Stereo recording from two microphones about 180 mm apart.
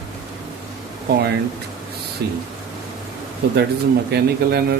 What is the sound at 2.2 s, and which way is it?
Speech, 65° right (ahead or behind).